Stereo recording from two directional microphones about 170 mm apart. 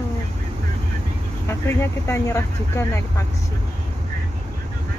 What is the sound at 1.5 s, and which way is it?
Speech, 15° left (ahead or behind).